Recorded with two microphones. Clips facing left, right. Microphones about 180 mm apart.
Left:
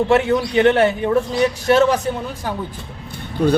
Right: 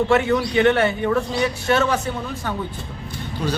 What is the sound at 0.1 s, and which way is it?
Speech, 15° left (ahead or behind).